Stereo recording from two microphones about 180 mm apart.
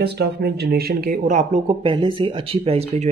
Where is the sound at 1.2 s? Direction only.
40° right (ahead or behind).